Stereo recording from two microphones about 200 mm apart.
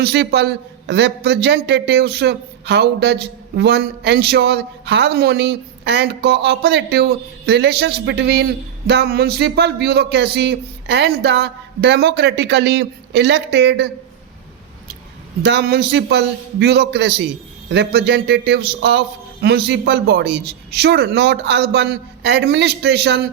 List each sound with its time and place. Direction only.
0.0 s a man's voice: 55° right (ahead or behind)
15.4 s a man's voice: 55° right (ahead or behind)